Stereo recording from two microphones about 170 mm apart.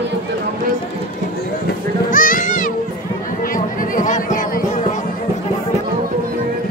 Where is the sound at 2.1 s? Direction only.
55° left (ahead or behind).